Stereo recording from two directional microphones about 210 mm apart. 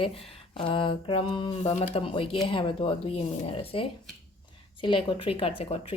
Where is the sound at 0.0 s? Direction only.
25° left (ahead or behind).